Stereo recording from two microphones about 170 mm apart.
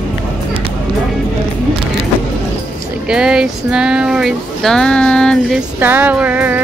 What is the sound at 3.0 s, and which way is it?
Speech, 5° right (ahead or behind).